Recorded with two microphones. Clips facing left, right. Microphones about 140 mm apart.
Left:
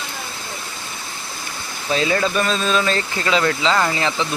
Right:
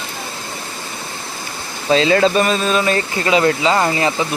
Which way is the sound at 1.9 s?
80° right.